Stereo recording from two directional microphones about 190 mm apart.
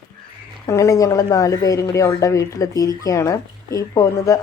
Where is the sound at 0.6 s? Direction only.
15° left (ahead or behind).